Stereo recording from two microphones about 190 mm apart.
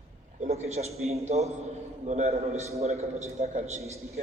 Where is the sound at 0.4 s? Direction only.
35° right (ahead or behind).